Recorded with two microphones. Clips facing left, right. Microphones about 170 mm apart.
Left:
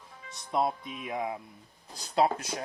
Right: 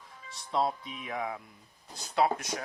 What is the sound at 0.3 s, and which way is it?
Speech, 20° left (ahead or behind).